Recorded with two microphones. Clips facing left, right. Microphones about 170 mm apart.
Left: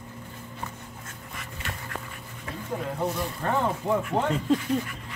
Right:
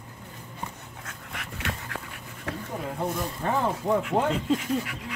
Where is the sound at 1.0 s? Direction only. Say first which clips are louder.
Right 1 dB; 70° right (ahead or behind).